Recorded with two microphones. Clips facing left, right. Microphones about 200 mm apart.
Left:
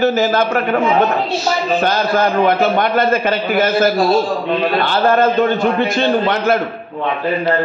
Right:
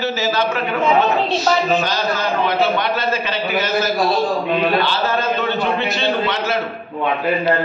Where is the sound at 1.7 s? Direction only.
55° left (ahead or behind).